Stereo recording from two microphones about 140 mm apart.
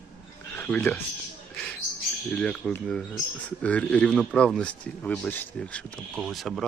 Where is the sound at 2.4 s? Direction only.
5° left (ahead or behind).